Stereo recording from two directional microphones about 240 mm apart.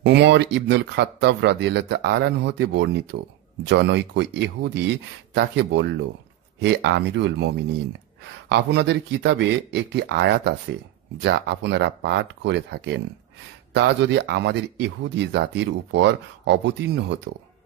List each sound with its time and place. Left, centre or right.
0.0 s speech: right